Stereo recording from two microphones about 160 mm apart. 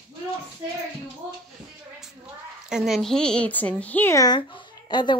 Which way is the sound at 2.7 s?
Centre (ahead or behind).